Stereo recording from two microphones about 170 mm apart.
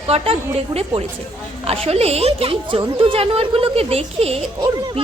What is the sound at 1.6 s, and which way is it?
A woman's voice, 35° right (ahead or behind).